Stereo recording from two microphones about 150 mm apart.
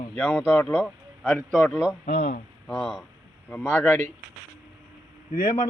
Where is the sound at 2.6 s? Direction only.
Centre (ahead or behind).